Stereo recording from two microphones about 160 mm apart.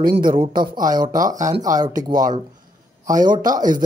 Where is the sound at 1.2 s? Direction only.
25° right (ahead or behind).